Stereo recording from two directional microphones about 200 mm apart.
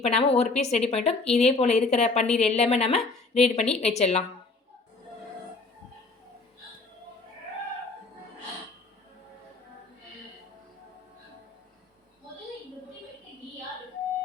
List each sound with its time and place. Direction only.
0.0 s speech: 30° left (ahead or behind)